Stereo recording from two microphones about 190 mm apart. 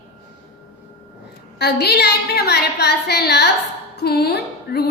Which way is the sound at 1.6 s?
60° left (ahead or behind).